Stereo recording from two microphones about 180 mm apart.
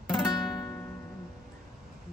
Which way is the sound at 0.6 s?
15° left (ahead or behind).